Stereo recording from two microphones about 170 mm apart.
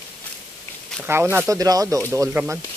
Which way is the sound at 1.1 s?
15° right (ahead or behind).